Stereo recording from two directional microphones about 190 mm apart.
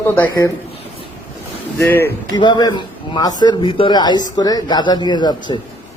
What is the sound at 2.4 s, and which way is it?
Speech, 25° left (ahead or behind).